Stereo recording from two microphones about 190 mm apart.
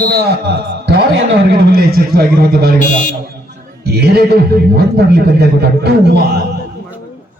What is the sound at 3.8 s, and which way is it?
A man's voice, 60° right (ahead or behind).